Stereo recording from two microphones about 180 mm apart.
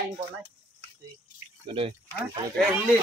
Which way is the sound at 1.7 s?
30° right (ahead or behind).